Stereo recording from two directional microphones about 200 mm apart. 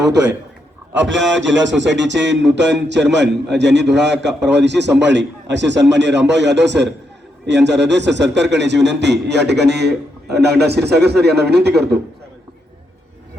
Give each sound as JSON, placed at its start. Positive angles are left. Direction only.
{"t": 0.9, "sound": "a man's voice", "side_deg": -65}